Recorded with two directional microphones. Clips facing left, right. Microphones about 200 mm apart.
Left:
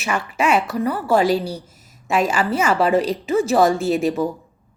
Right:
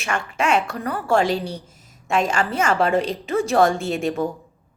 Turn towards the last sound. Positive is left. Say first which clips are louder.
# left 4 dB
turn(degrees=5)  # may be behind; listen again after turning